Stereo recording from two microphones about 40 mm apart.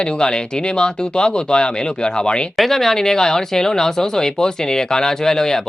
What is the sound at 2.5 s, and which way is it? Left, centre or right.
Speech, centre.